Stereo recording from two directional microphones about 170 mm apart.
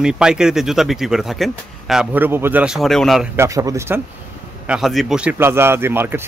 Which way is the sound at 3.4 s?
20° right (ahead or behind).